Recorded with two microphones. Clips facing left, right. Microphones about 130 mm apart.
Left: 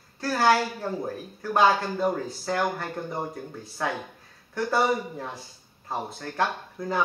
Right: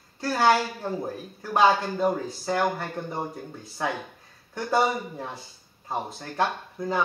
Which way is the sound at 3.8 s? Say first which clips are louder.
Even; 15° right (ahead or behind).